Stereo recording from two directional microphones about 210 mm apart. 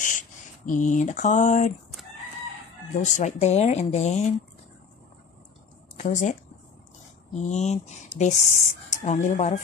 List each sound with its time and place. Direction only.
0.7 s speech: 35° left (ahead or behind)
3.0 s speech: 35° left (ahead or behind)
5.9 s speech: 35° left (ahead or behind)
7.3 s speech: 35° left (ahead or behind)